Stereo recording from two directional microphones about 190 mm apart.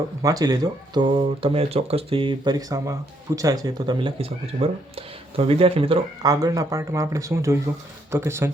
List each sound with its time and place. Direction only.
0.2 s speech: 20° right (ahead or behind)